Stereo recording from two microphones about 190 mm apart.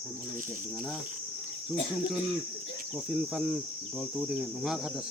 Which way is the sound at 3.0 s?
5° right (ahead or behind).